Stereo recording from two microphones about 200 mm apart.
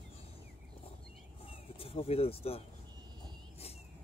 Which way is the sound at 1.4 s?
30° left (ahead or behind).